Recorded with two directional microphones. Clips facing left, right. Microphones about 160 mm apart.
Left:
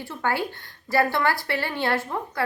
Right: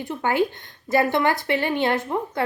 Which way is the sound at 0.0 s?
20° right (ahead or behind).